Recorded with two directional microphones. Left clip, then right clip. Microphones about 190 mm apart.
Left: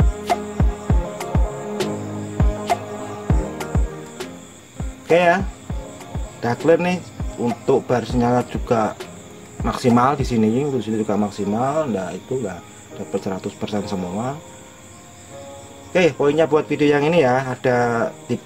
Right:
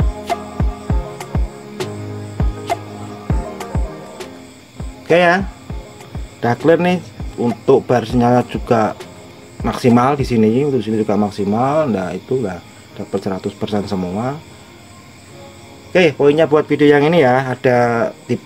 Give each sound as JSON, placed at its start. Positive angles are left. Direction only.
{"t": 0.2, "sound": "music", "side_deg": 0}
{"t": 5.0, "sound": "speech", "side_deg": -10}
{"t": 6.4, "sound": "speech", "side_deg": -10}
{"t": 15.9, "sound": "speech", "side_deg": -5}